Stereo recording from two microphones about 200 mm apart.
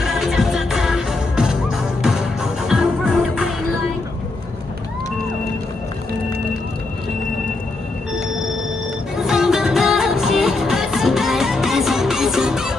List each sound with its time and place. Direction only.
0.0 s music: centre (ahead or behind)
9.1 s music: centre (ahead or behind)